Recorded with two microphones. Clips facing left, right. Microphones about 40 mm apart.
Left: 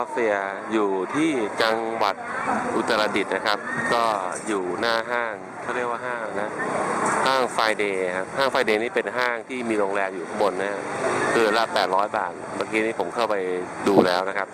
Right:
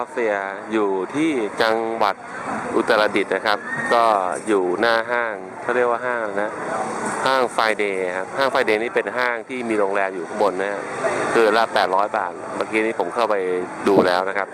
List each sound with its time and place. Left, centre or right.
0.2 s speech: centre